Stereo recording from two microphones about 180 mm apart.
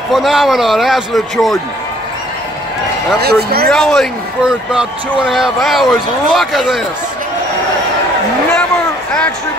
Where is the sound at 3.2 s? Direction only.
60° right (ahead or behind).